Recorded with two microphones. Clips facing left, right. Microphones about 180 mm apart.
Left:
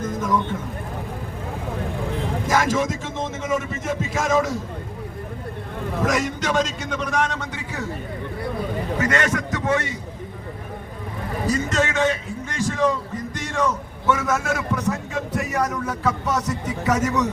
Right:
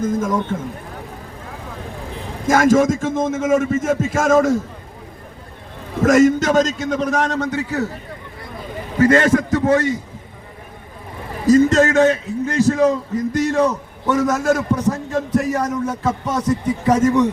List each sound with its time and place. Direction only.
0.2 s a man's voice: 50° right (ahead or behind)
2.5 s a man's voice: 50° right (ahead or behind)
6.0 s a man's voice: 45° right (ahead or behind)
9.0 s a man's voice: 35° right (ahead or behind)
11.4 s a man's voice: 40° right (ahead or behind)